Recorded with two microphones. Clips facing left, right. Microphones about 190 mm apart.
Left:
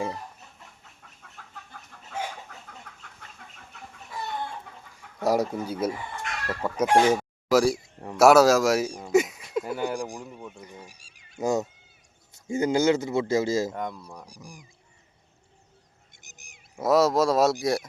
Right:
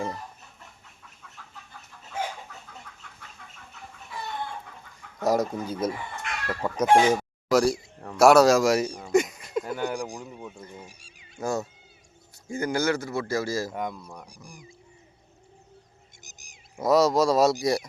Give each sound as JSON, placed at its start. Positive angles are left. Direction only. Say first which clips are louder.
{"t": 2.9, "sound": "chicken", "louder": "even", "side_deg": 60}
{"t": 5.2, "sound": "speech", "louder": "even", "side_deg": 10}
{"t": 9.0, "sound": "a sound", "louder": "left 1 dB", "side_deg": 5}
{"t": 10.2, "sound": "speech", "louder": "even", "side_deg": 0}
{"t": 11.3, "sound": "speech", "louder": "left 3 dB", "side_deg": 20}
{"t": 13.7, "sound": "speech", "louder": "right 1 dB", "side_deg": 0}
{"t": 14.3, "sound": "speech", "louder": "left 2 dB", "side_deg": 40}
{"t": 16.2, "sound": "a sound", "louder": "right 1 dB", "side_deg": 60}
{"t": 16.7, "sound": "speech", "louder": "even", "side_deg": 0}